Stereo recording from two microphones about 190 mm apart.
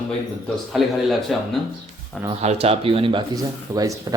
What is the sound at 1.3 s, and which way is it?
Speech, centre (ahead or behind).